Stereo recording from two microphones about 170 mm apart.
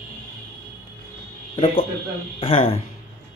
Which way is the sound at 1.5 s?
30° left (ahead or behind).